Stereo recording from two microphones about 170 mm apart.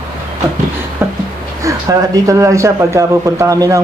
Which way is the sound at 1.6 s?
20° right (ahead or behind).